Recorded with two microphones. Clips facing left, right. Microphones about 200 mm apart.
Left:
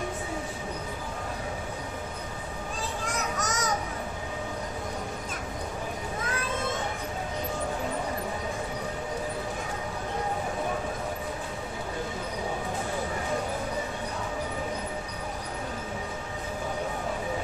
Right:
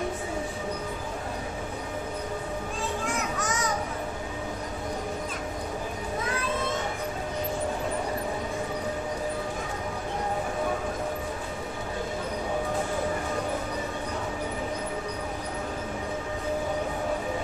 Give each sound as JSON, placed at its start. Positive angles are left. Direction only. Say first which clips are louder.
{"t": 3.3, "sound": "children playing", "louder": "right 1 dB", "side_deg": 40}